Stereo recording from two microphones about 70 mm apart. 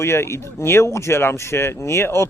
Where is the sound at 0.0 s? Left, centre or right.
Left.